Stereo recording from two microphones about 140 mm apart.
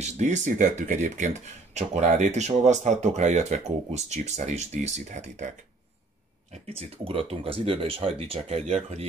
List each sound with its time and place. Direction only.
0.0 s speech: 60° right (ahead or behind)
6.5 s speech: 45° right (ahead or behind)